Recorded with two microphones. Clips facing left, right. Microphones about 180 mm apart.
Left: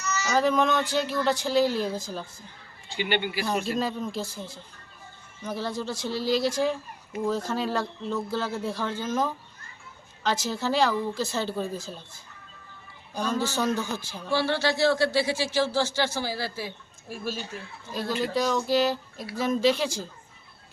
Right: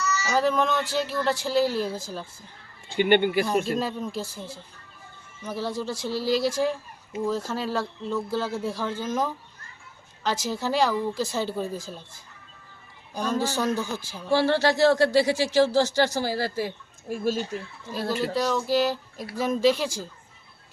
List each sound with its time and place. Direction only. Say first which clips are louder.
0.3 s speech: left 1 dB; 5° right (ahead or behind)
2.9 s speech: right 8 dB; 50° right (ahead or behind)
3.8 s speech: even; 10° right (ahead or behind)
13.1 s speech: right 1 dB; 10° right (ahead or behind)
14.3 s speech: right 4 dB; 40° right (ahead or behind)
18.2 s speech: left 1 dB; centre (ahead or behind)